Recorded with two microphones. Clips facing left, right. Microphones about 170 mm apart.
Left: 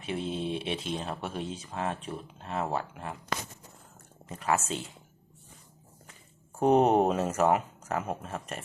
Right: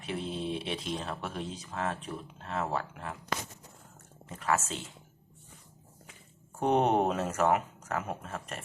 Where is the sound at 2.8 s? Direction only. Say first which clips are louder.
Left 2 dB; 5° left (ahead or behind).